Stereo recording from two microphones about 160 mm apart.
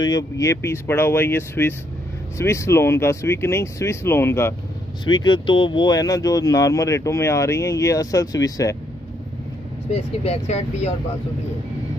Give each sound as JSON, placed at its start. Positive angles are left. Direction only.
{"t": 0.0, "sound": "speech", "side_deg": 20}
{"t": 5.0, "sound": "speech", "side_deg": 30}
{"t": 9.8, "sound": "speech", "side_deg": 40}